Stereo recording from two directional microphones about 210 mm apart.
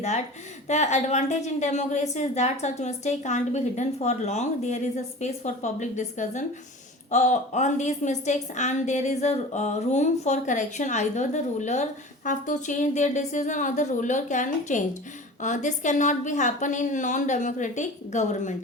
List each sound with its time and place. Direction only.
0.7 s a woman's voice: 35° left (ahead or behind)